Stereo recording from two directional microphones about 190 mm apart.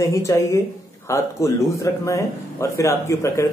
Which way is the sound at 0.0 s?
15° left (ahead or behind).